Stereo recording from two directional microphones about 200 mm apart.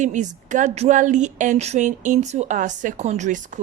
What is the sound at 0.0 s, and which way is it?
A woman's voice, 35° right (ahead or behind).